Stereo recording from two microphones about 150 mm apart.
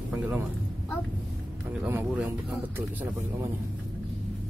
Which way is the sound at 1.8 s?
10° right (ahead or behind).